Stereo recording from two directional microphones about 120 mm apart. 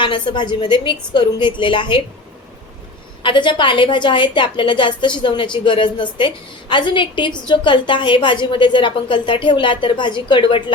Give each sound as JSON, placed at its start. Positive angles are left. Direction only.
{"t": 0.0, "sound": "a woman's voice", "side_deg": 40}
{"t": 3.2, "sound": "a woman's voice", "side_deg": 40}